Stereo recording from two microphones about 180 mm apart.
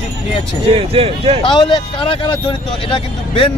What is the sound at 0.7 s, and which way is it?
Speech, 30° right (ahead or behind).